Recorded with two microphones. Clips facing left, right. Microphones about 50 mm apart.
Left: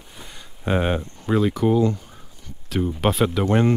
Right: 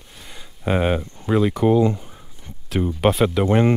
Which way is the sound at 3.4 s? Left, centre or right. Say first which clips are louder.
Right 2 dB; centre.